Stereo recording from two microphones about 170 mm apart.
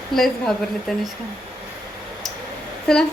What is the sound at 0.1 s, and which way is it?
Speech, centre (ahead or behind).